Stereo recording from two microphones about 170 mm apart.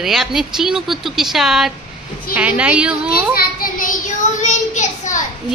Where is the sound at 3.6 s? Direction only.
55° left (ahead or behind).